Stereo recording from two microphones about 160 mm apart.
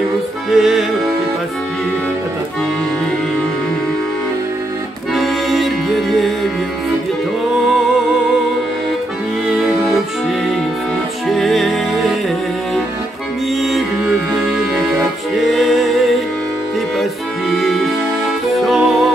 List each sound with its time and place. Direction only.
0.5 s music: centre (ahead or behind)
5.1 s accordion: centre (ahead or behind)
11.2 s music: centre (ahead or behind)
13.6 s music: centre (ahead or behind)
15.3 s music: centre (ahead or behind)
17.0 s music: centre (ahead or behind)